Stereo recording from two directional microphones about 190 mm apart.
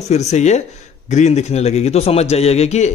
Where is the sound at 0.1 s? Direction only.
35° left (ahead or behind).